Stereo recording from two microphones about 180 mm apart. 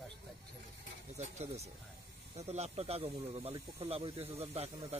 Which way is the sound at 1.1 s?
35° right (ahead or behind).